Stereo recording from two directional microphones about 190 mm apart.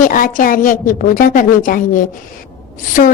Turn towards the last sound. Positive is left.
turn(degrees=45)  # may be behind; listen again after turning